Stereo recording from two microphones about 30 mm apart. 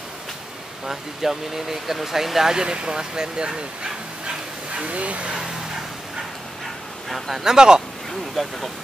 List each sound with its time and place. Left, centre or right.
0.8 s speech: centre
2.5 s speech: right
4.7 s speech: right
7.1 s speech: centre
7.4 s speech: right
8.4 s speech: centre